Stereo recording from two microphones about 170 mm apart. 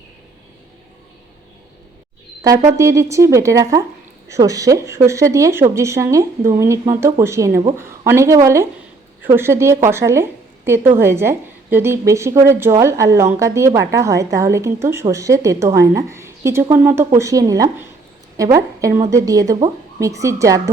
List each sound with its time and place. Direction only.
2.7 s a woman's voice: 15° right (ahead or behind)